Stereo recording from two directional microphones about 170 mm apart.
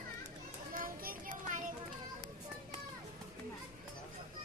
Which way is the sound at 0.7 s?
55° right (ahead or behind).